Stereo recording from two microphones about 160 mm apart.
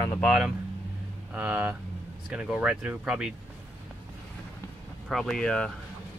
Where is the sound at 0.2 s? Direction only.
Centre (ahead or behind).